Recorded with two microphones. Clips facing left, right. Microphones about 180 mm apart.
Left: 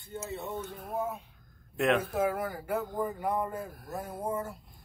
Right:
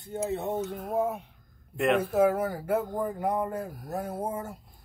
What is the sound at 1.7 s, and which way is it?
Speech, centre (ahead or behind).